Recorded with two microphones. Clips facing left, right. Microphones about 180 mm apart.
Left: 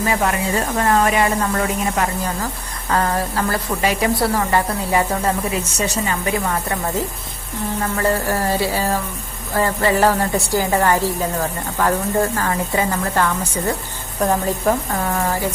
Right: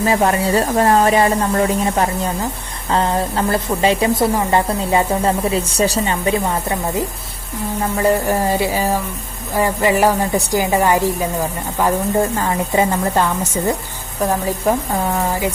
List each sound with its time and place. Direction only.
0.0 s a woman's voice: 30° right (ahead or behind)
14.2 s a woman's voice: 5° right (ahead or behind)